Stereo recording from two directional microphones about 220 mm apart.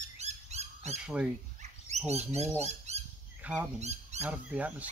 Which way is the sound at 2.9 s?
30° right (ahead or behind).